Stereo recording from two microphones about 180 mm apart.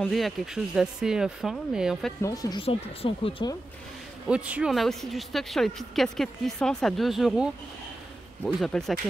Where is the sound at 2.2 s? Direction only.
20° left (ahead or behind).